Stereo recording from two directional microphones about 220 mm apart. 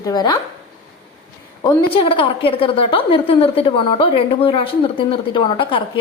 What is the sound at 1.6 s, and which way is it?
A woman's voice, 25° left (ahead or behind).